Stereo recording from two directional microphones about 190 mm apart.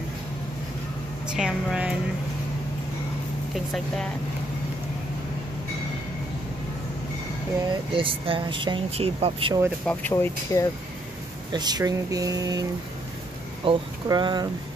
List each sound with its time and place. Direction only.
1.2 s a woman's voice: 5° right (ahead or behind)
3.5 s a woman's voice: centre (ahead or behind)
7.9 s speech: 30° right (ahead or behind)
9.8 s speech: 10° left (ahead or behind)
11.5 s speech: 20° right (ahead or behind)
13.7 s speech: 25° right (ahead or behind)